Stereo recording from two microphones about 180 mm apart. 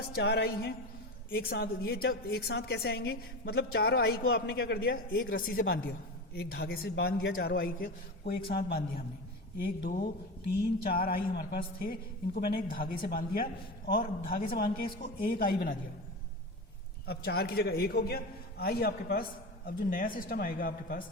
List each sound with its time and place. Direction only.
0.2 s a woman's voice: 65° left (ahead or behind)
17.1 s a woman's voice: 60° left (ahead or behind)